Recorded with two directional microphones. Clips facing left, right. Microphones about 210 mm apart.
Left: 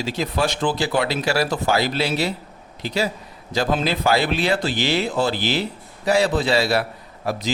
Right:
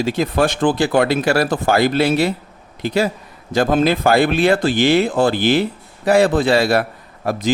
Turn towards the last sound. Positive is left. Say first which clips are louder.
# right 4 dB
turn(degrees=-50)  # may be behind; listen again after turning